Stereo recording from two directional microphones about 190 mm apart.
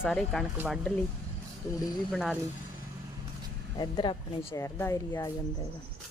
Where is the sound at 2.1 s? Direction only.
5° right (ahead or behind).